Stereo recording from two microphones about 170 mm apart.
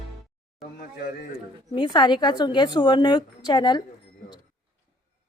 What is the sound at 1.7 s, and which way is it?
A woman's voice, 25° left (ahead or behind).